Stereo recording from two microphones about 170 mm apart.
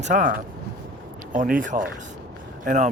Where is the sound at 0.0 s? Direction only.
50° right (ahead or behind).